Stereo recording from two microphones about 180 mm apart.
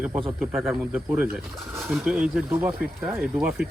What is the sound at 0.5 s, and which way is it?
Speech, centre (ahead or behind).